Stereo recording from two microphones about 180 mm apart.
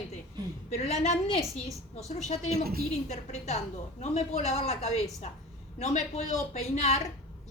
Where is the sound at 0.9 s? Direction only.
35° left (ahead or behind).